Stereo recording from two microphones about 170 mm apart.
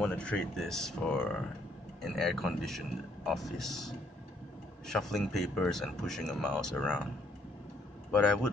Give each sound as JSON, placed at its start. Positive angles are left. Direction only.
{"t": 0.0, "sound": "speech", "side_deg": 5}
{"t": 8.1, "sound": "speech", "side_deg": 5}